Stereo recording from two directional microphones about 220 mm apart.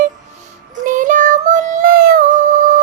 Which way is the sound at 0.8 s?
35° right (ahead or behind).